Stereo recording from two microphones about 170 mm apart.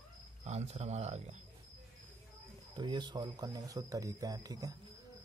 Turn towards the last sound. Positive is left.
turn(degrees=-20)  # may be behind; listen again after turning